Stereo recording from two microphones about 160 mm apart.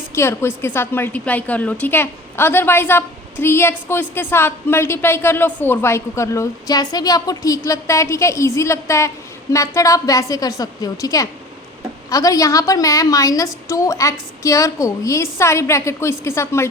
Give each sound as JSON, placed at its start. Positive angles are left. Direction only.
{"t": 0.1, "sound": "a woman's voice", "side_deg": 15}